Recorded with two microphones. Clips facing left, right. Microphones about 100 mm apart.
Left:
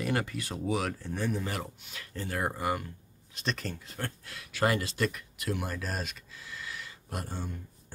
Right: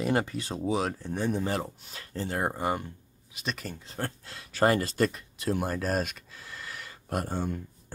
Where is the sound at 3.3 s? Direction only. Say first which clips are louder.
Left 1 dB; 5° right (ahead or behind).